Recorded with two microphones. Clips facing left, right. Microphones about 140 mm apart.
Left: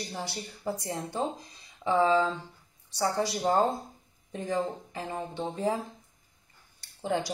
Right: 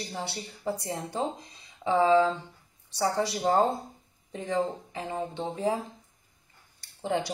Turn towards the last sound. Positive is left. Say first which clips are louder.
# right 1 dB
turn(degrees=-25)  # may be behind; listen again after turning